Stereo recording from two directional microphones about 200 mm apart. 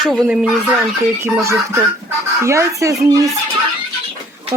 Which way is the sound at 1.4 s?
15° right (ahead or behind).